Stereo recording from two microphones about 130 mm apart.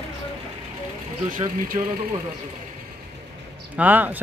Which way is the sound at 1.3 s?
90° right.